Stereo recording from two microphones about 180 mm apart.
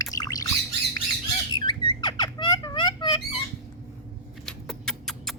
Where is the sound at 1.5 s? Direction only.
25° left (ahead or behind).